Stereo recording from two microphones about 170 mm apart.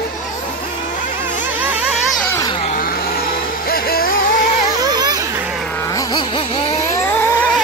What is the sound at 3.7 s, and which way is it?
Music, 60° left (ahead or behind).